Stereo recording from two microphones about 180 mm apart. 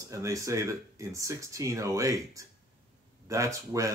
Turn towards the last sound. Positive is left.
turn(degrees=-15)  # may be behind; listen again after turning